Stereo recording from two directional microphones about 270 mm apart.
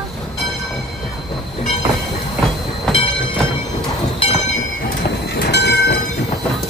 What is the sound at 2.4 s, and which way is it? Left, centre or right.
Train, centre.